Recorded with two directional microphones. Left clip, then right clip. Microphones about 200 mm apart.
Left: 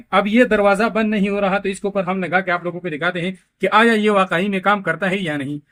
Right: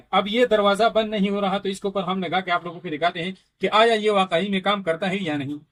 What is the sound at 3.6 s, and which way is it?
A man's voice, 45° left (ahead or behind).